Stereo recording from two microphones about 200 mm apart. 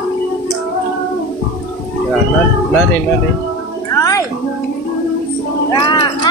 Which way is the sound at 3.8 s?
15° left (ahead or behind).